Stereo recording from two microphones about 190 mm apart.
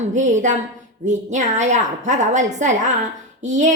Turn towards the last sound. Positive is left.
turn(degrees=-40)  # may be behind; listen again after turning